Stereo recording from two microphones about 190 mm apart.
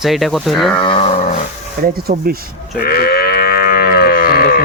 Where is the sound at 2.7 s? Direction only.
55° left (ahead or behind).